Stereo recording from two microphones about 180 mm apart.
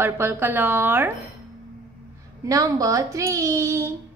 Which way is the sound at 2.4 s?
20° right (ahead or behind).